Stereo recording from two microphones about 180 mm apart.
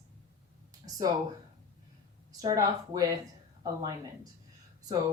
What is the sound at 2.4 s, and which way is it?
Speech, 20° right (ahead or behind).